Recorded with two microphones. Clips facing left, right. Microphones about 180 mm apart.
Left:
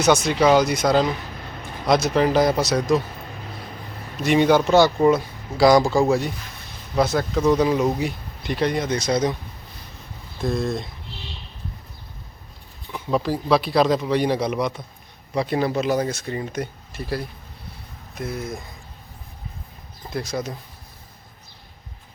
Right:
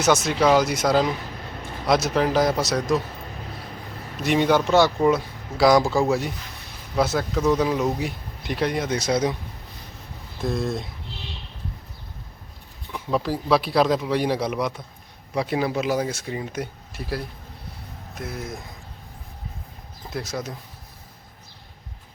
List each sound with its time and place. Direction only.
0.0 s speech: 5° right (ahead or behind)
4.2 s speech: centre (ahead or behind)
10.4 s speech: 5° right (ahead or behind)
12.9 s speech: centre (ahead or behind)
20.1 s speech: centre (ahead or behind)